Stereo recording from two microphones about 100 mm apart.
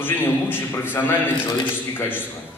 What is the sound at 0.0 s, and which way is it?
Speech, 20° left (ahead or behind).